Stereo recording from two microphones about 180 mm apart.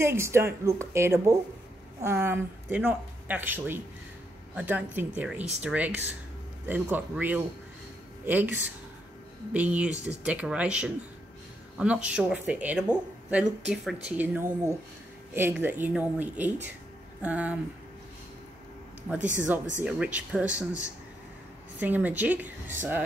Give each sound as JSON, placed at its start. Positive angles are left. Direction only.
{"t": 0.0, "sound": "speech", "side_deg": -15}
{"t": 19.8, "sound": "speech", "side_deg": -5}
{"t": 21.7, "sound": "speech", "side_deg": -10}